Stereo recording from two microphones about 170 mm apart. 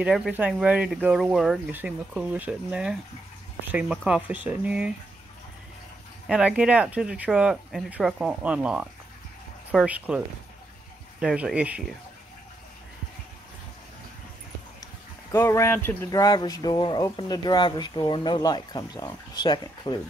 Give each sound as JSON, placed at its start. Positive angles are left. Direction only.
{"t": 0.0, "sound": "speech", "side_deg": -5}
{"t": 6.2, "sound": "speech", "side_deg": -5}
{"t": 15.3, "sound": "speech", "side_deg": 15}